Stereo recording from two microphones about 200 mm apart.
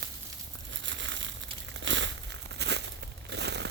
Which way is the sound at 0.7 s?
65° right (ahead or behind).